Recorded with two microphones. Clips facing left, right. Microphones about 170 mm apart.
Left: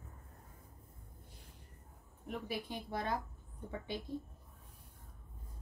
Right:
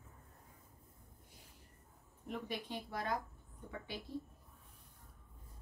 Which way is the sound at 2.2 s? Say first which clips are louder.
Left 2 dB; 5° left (ahead or behind).